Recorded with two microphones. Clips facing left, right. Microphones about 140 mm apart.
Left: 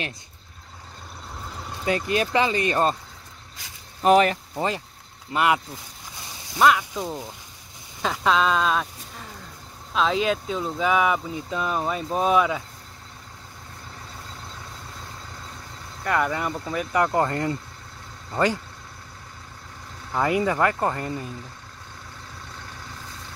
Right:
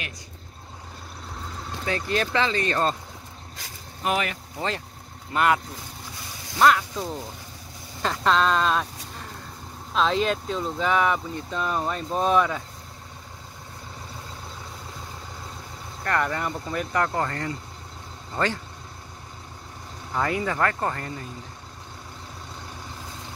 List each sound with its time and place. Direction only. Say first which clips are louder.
1.9 s speech: left 3 dB; 15° left (ahead or behind)
4.0 s speech: left 9 dB; 40° left (ahead or behind)
5.3 s speech: even; 10° left (ahead or behind)
6.6 s speech: even; 5° left (ahead or behind)
16.0 s speech: left 2 dB; 10° left (ahead or behind)
17.1 s speech: left 5 dB; 20° left (ahead or behind)
20.2 s speech: left 3 dB; 15° left (ahead or behind)